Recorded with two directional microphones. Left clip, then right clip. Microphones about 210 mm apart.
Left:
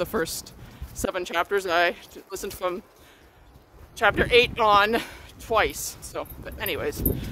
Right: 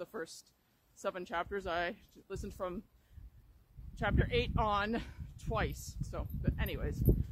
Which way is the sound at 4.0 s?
10° left (ahead or behind).